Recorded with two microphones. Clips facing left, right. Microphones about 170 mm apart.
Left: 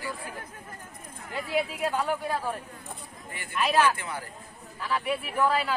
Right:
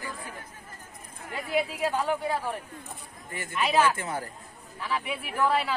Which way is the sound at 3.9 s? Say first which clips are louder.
Right 3 dB; 40° right (ahead or behind).